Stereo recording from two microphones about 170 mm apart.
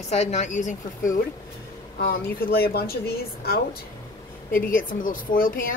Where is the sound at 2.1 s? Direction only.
60° left (ahead or behind).